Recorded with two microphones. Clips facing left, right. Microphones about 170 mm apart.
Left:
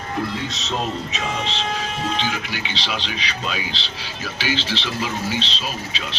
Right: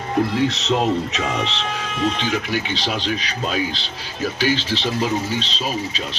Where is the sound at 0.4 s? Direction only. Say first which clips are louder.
Right 7 dB; 65° right (ahead or behind).